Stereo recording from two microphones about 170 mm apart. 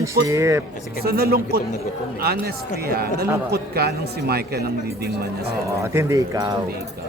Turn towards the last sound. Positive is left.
turn(degrees=-20)  # may be behind; listen again after turning